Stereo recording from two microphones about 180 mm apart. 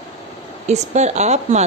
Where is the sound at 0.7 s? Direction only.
40° right (ahead or behind).